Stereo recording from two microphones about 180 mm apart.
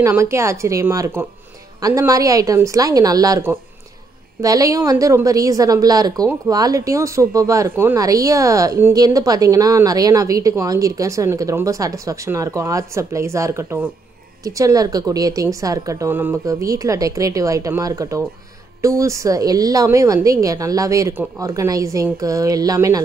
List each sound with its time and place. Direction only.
0.0 s a woman's voice: 15° right (ahead or behind)